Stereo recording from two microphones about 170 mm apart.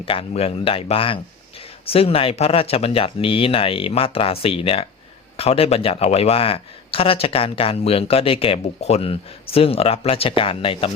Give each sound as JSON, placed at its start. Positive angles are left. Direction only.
{"t": 0.0, "sound": "a man's voice", "side_deg": 30}